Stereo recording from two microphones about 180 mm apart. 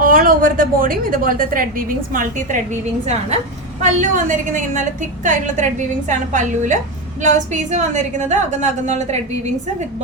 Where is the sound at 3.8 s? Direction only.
45° right (ahead or behind).